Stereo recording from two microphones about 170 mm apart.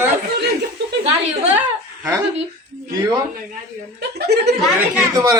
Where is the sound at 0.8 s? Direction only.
90° right.